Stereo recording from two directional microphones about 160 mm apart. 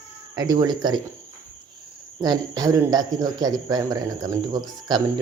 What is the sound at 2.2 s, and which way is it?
Speech, 25° right (ahead or behind).